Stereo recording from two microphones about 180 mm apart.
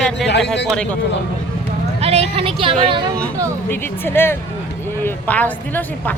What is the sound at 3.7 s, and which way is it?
A woman's voice, 10° left (ahead or behind).